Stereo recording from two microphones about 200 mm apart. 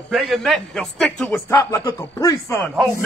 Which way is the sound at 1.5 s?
15° left (ahead or behind).